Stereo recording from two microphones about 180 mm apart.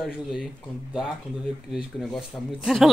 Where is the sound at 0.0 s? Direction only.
Centre (ahead or behind).